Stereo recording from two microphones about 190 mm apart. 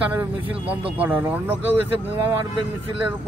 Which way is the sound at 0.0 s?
10° right (ahead or behind).